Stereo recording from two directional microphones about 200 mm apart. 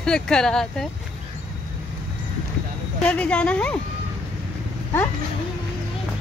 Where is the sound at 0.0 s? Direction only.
5° left (ahead or behind).